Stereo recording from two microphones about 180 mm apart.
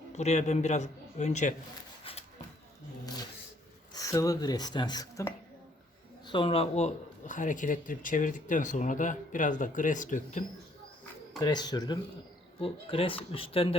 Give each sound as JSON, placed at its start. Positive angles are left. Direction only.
{"t": 0.1, "sound": "a man's voice", "side_deg": 40}
{"t": 2.0, "sound": "shuffle", "side_deg": 30}
{"t": 3.9, "sound": "speech", "side_deg": 20}
{"t": 11.3, "sound": "a man's voice", "side_deg": 20}